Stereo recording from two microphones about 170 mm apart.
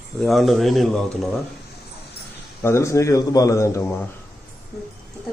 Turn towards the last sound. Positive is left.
turn(degrees=15)  # may be behind; listen again after turning